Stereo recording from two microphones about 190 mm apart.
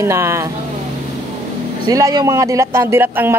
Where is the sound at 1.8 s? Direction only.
20° right (ahead or behind).